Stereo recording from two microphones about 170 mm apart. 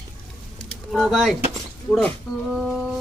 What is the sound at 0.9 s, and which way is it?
Speech, centre (ahead or behind).